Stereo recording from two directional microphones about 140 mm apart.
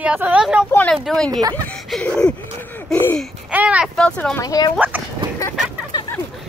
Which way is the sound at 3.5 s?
10° right (ahead or behind).